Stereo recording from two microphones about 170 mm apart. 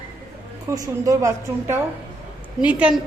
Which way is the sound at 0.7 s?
20° right (ahead or behind).